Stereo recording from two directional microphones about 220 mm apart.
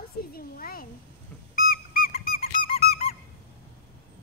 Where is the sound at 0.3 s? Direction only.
40° left (ahead or behind).